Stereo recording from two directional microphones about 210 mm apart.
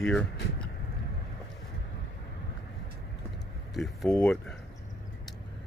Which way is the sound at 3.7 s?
Centre (ahead or behind).